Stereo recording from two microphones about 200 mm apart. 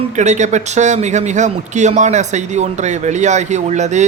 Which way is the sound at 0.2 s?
35° right (ahead or behind).